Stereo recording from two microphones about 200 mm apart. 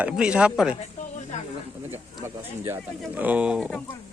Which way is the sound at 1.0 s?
35° left (ahead or behind).